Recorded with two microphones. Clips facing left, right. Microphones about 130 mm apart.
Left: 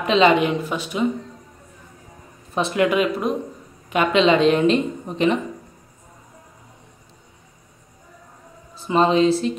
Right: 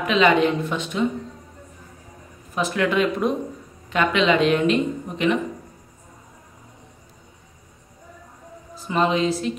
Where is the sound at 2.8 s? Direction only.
5° left (ahead or behind).